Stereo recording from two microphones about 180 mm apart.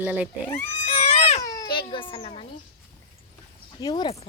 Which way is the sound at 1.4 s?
20° left (ahead or behind).